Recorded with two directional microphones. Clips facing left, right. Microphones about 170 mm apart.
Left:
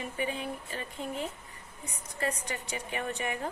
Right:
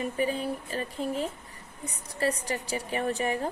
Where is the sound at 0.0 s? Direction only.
35° right (ahead or behind).